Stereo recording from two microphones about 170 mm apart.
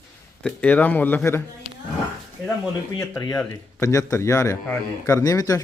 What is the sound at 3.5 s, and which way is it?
A man's voice, 20° left (ahead or behind).